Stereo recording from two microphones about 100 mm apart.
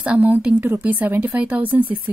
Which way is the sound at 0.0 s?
15° right (ahead or behind).